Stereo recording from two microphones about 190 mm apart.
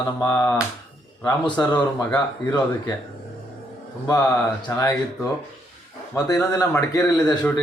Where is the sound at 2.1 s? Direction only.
20° left (ahead or behind).